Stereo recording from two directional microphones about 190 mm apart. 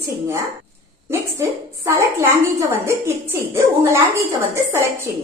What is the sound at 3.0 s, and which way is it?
A woman's voice, 15° right (ahead or behind).